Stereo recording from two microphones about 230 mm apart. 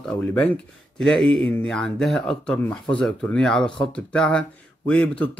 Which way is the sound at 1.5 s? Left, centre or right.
Centre.